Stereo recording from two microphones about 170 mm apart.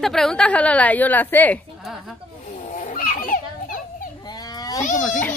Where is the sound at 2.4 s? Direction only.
45° left (ahead or behind).